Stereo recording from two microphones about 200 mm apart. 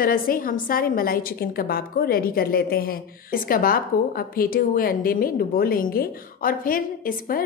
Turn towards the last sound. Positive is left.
turn(degrees=45)  # may be behind; listen again after turning